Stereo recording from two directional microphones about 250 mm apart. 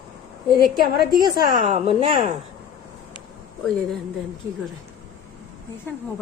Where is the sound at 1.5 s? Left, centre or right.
Right.